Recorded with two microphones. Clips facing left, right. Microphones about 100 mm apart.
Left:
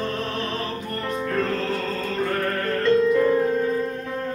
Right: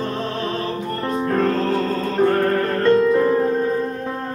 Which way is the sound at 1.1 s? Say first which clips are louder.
Right 5 dB; 35° right (ahead or behind).